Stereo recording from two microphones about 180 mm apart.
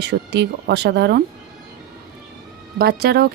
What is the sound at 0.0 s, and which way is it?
Speech, 70° right (ahead or behind).